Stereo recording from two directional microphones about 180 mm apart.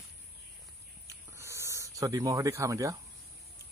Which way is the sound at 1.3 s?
15° right (ahead or behind).